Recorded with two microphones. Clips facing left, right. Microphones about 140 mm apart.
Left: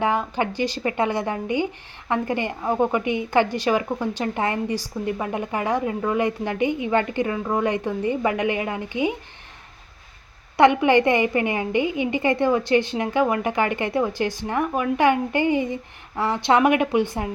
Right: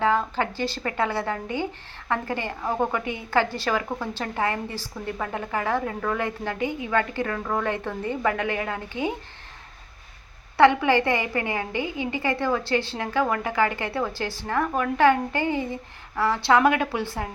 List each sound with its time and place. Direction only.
0.0 s a woman's voice: 15° left (ahead or behind)
10.6 s a woman's voice: 15° left (ahead or behind)